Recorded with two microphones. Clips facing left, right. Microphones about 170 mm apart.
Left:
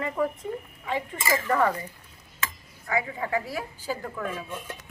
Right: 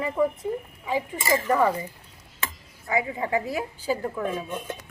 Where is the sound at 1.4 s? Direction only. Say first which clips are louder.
Right 1 dB; 10° right (ahead or behind).